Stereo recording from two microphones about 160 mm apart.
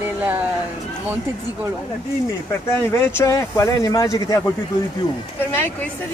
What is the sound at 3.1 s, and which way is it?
Speech, 20° left (ahead or behind).